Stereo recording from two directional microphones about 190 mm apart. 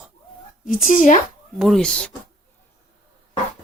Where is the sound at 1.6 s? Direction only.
Centre (ahead or behind).